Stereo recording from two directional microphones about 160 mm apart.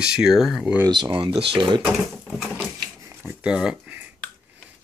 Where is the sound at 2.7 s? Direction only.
15° right (ahead or behind).